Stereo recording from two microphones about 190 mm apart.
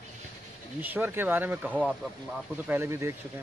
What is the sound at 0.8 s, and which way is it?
Speech, 10° right (ahead or behind).